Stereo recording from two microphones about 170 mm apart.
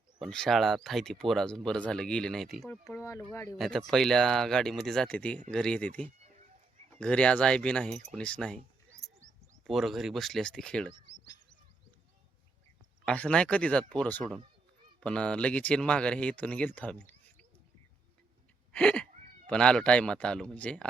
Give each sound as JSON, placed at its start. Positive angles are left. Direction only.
{"t": 0.2, "sound": "speech", "side_deg": 5}
{"t": 2.6, "sound": "speech", "side_deg": 15}
{"t": 3.6, "sound": "speech", "side_deg": 0}
{"t": 6.2, "sound": "a sound", "side_deg": -45}
{"t": 6.9, "sound": "speech", "side_deg": 5}
{"t": 9.2, "sound": "bird", "side_deg": -45}
{"t": 9.6, "sound": "speech", "side_deg": 0}
{"t": 13.1, "sound": "speech", "side_deg": 5}
{"t": 18.7, "sound": "a sound", "side_deg": 5}
{"t": 19.5, "sound": "speech", "side_deg": 5}